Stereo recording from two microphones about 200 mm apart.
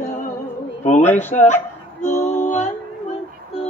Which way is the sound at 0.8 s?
35° left (ahead or behind).